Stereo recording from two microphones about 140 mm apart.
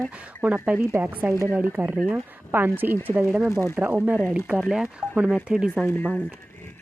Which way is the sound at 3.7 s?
15° right (ahead or behind).